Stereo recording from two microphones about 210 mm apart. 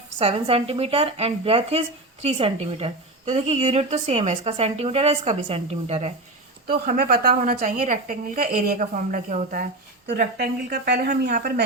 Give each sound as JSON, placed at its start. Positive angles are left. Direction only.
{"t": 0.2, "sound": "a woman's voice", "side_deg": -25}
{"t": 6.7, "sound": "a woman's voice", "side_deg": -45}
{"t": 10.1, "sound": "a woman's voice", "side_deg": -50}